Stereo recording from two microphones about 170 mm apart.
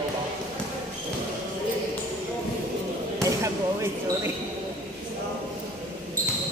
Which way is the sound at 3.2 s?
15° right (ahead or behind).